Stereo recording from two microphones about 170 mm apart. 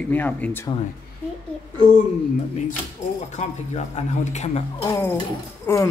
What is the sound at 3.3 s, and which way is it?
A man's voice, 40° left (ahead or behind).